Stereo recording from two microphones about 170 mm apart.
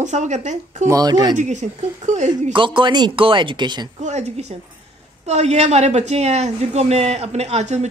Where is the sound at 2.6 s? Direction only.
30° right (ahead or behind).